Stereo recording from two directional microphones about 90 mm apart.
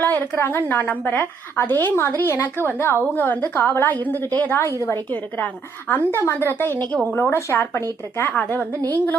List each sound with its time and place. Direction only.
0.0 s a woman's voice: 20° left (ahead or behind)
6.1 s a woman's voice: 25° left (ahead or behind)